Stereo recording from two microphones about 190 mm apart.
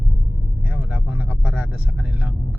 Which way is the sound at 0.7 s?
5° right (ahead or behind).